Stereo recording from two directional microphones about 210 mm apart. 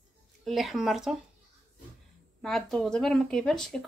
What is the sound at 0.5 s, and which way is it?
Speech, centre (ahead or behind).